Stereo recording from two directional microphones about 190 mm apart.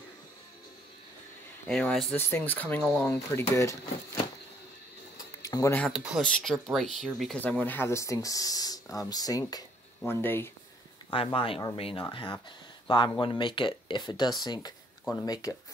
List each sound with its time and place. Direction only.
1.7 s speech: 5° left (ahead or behind)
5.4 s speech: 15° left (ahead or behind)
5.9 s speech: centre (ahead or behind)
11.1 s speech: 30° left (ahead or behind)